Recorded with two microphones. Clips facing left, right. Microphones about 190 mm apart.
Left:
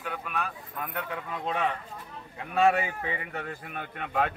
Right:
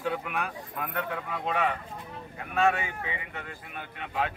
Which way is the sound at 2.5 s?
35° left (ahead or behind).